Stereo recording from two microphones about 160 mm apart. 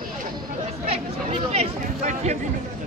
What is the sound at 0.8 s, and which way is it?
Speech, 40° right (ahead or behind).